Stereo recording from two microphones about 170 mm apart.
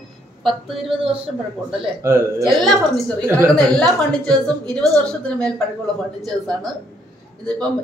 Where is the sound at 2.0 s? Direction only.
15° right (ahead or behind).